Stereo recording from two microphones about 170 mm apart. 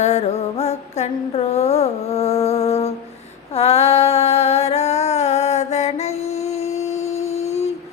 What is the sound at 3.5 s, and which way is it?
Female singing, 35° left (ahead or behind).